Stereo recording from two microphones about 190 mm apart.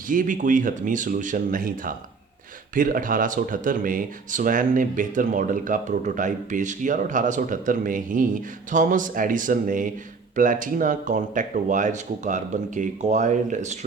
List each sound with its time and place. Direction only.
0.1 s speech: 45° right (ahead or behind)